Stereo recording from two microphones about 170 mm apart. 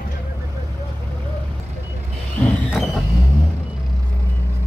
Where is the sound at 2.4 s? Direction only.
5° left (ahead or behind).